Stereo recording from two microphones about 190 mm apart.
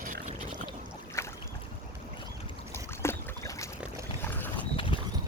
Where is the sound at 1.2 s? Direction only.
15° left (ahead or behind).